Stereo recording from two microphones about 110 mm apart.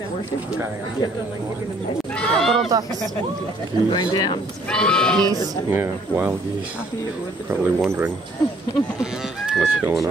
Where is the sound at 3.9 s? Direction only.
40° left (ahead or behind).